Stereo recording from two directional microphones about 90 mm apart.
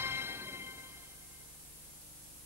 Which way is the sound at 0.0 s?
25° right (ahead or behind).